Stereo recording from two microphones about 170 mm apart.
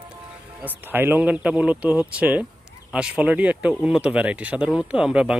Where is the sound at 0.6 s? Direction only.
10° right (ahead or behind).